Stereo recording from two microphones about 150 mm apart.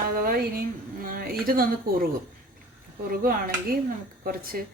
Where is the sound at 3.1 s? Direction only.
75° right (ahead or behind).